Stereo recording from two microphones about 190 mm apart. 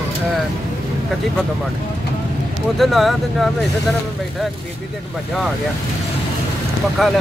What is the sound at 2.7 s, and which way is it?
Speech, centre (ahead or behind).